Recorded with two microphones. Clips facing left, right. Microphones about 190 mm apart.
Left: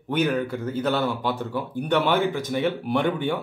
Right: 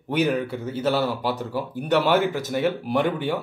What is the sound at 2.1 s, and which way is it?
Speech, 45° right (ahead or behind).